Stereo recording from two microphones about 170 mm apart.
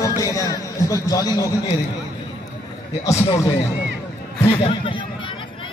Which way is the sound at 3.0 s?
20° left (ahead or behind).